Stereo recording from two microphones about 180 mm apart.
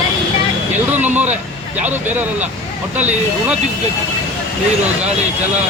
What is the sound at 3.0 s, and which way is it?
Speech, 10° right (ahead or behind).